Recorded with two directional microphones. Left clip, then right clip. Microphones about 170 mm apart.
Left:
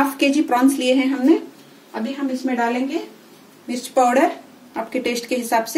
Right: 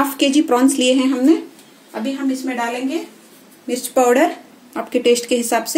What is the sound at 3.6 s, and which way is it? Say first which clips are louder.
Speech: right 2 dB; 50° right (ahead or behind).